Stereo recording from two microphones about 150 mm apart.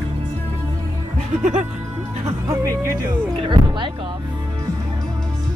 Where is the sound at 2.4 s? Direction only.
20° right (ahead or behind).